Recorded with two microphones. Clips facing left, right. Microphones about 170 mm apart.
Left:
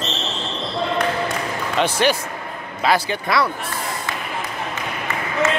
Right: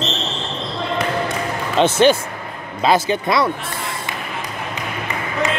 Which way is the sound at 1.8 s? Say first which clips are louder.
Right 6 dB; 25° right (ahead or behind).